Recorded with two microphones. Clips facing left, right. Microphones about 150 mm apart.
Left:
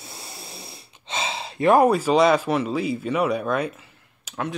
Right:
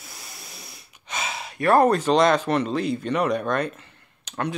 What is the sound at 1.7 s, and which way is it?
Speech, 10° left (ahead or behind).